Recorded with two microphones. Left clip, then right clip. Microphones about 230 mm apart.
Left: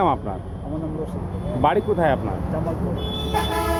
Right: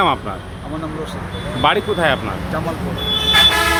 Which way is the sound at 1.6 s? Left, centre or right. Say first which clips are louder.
Right 3 dB; centre.